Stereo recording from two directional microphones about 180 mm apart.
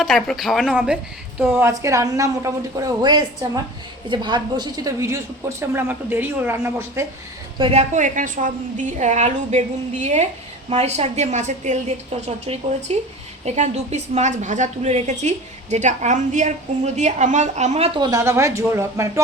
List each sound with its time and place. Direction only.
0.0 s a woman's voice: centre (ahead or behind); by 7.0 s 15° right (ahead or behind)
7.6 s a woman's voice: 35° right (ahead or behind)
18.0 s a woman's voice: 20° right (ahead or behind)